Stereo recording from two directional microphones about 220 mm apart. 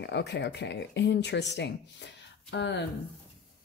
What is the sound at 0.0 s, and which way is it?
Speech, 50° left (ahead or behind).